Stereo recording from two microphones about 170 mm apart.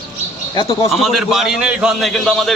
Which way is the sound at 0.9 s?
Centre (ahead or behind).